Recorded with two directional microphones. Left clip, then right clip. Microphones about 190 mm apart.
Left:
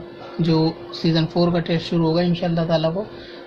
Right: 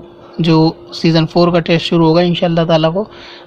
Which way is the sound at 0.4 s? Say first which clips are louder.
Right 8 dB; 40° right (ahead or behind).